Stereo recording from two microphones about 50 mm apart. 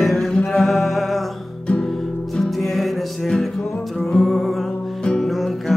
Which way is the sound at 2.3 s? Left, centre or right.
Centre.